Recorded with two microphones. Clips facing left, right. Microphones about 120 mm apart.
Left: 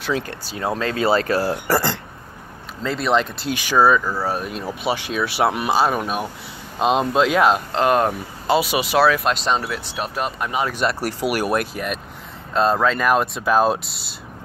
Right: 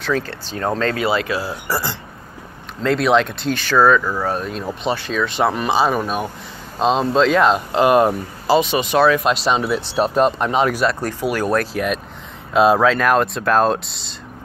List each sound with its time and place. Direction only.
0.0 s speech: 15° left (ahead or behind)
0.9 s speech: 40° left (ahead or behind)
1.5 s speech: 55° left (ahead or behind)
2.8 s speech: centre (ahead or behind)
7.7 s speech: 5° right (ahead or behind)
8.5 s speech: 5° left (ahead or behind)
9.8 s speech: 30° right (ahead or behind)
11.2 s speech: 20° left (ahead or behind)
11.7 s speech: centre (ahead or behind)